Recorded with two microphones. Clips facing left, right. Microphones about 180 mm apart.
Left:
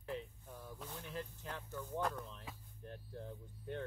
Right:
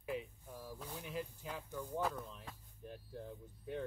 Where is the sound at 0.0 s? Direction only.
10° right (ahead or behind).